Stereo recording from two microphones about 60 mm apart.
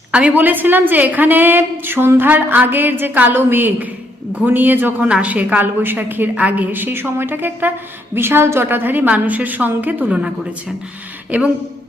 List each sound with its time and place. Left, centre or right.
0.1 s a woman's voice: centre
0.3 s a woman's voice: right
5.0 s a woman's voice: right
11.3 s a woman's voice: right